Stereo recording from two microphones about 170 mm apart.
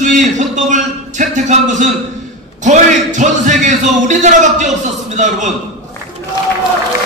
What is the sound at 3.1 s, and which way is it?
A man's voice, 45° right (ahead or behind).